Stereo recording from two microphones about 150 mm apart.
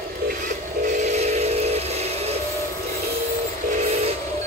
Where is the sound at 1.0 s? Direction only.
50° right (ahead or behind).